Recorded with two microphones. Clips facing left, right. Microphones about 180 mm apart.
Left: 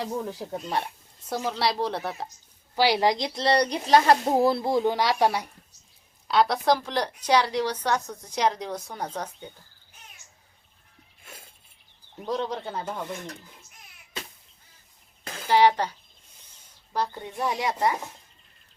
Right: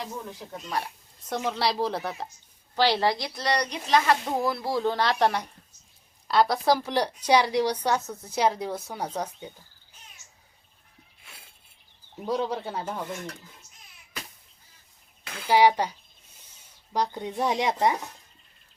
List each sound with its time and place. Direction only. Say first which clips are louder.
0.0 s speech: left 6 dB; 35° left (ahead or behind)
1.3 s a woman's voice: even; centre (ahead or behind)
2.7 s speech: left 1 dB; 10° left (ahead or behind)
6.2 s a woman's voice: even; centre (ahead or behind)
11.3 s a sound: left 6 dB; 45° left (ahead or behind)
12.2 s a woman's voice: right 1 dB; 5° right (ahead or behind)
15.4 s a woman's voice: even; 10° right (ahead or behind)